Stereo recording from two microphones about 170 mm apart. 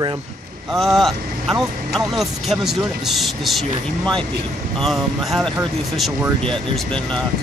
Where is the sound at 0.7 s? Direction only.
Centre (ahead or behind).